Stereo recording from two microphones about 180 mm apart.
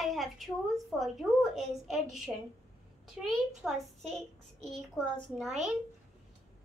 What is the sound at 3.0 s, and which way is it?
A child's voice, centre (ahead or behind).